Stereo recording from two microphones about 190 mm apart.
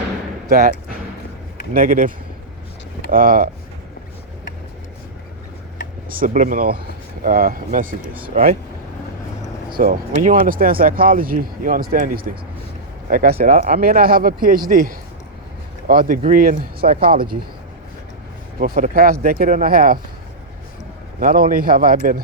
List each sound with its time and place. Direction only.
1.7 s speech: 45° right (ahead or behind)
6.1 s speech: 45° right (ahead or behind)
9.7 s speech: 50° right (ahead or behind)
18.6 s speech: 45° right (ahead or behind)
21.2 s speech: 50° right (ahead or behind)